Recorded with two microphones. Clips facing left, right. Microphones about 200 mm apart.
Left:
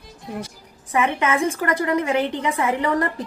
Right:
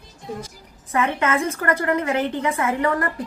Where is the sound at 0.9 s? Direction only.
15° left (ahead or behind).